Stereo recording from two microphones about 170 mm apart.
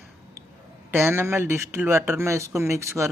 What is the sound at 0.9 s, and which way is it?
Speech, 15° right (ahead or behind).